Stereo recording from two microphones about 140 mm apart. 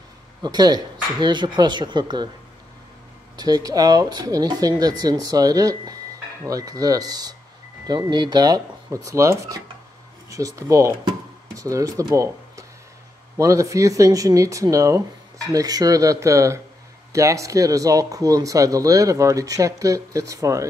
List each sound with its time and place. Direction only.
0.4 s speech: 30° right (ahead or behind)
3.3 s speech: 30° right (ahead or behind)